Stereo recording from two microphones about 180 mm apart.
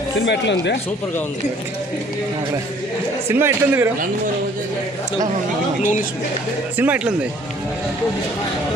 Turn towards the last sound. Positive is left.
turn(degrees=-10)  # may be behind; listen again after turning